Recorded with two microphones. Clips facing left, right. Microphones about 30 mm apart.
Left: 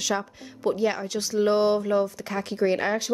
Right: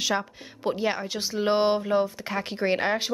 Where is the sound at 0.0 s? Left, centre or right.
Centre.